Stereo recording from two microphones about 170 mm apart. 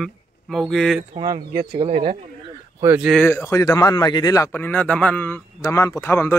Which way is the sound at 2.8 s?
10° right (ahead or behind).